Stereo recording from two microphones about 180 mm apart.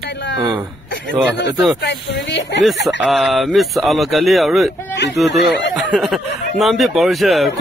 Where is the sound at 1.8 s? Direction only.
85° left.